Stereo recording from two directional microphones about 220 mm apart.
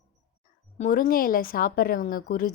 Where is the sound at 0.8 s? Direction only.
40° left (ahead or behind).